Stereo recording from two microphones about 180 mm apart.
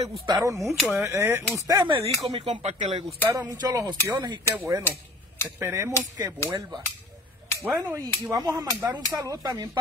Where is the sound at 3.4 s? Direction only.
20° right (ahead or behind).